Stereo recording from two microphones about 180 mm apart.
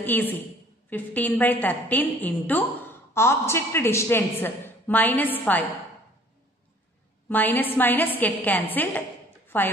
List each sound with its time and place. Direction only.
0.0 s a woman's voice: 10° left (ahead or behind)
7.2 s a woman's voice: 10° left (ahead or behind)